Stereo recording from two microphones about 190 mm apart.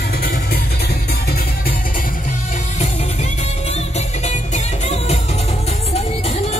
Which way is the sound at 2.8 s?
35° left (ahead or behind).